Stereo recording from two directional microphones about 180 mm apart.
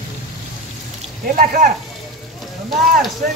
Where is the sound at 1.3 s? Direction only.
50° right (ahead or behind).